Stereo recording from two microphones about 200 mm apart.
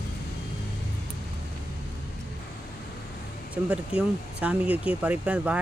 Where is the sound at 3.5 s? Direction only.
5° right (ahead or behind).